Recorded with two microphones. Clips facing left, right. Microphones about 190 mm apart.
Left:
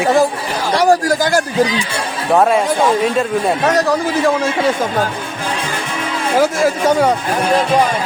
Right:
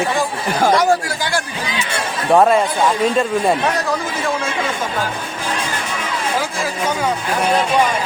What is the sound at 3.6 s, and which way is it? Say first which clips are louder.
Speech: left 5 dB; 40° left (ahead or behind).